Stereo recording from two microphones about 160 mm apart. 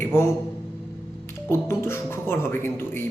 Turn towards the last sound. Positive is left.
turn(degrees=15)  # may be behind; listen again after turning